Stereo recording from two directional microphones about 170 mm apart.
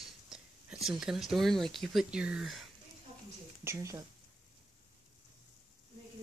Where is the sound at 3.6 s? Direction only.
20° right (ahead or behind).